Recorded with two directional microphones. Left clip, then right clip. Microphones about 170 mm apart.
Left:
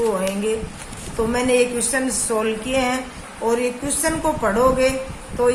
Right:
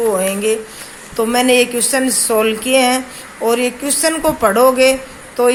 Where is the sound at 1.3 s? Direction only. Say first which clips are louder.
Right 6 dB; 55° right (ahead or behind).